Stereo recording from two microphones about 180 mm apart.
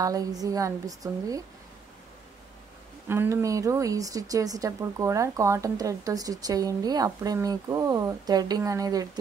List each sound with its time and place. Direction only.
0.0 s speech: 20° right (ahead or behind)
3.1 s speech: 10° right (ahead or behind)